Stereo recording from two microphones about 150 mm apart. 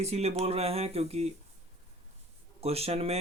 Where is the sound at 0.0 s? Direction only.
45° right (ahead or behind).